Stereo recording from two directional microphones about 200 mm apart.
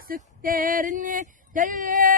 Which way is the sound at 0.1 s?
45° right (ahead or behind).